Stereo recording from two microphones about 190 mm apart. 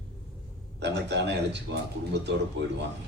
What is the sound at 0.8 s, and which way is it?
A man's voice, 65° right (ahead or behind).